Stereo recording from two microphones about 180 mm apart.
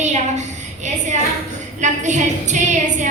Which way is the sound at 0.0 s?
40° right (ahead or behind).